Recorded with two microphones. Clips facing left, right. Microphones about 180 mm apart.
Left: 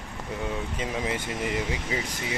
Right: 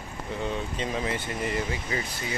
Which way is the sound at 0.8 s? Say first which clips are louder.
Left 1 dB; 10° left (ahead or behind).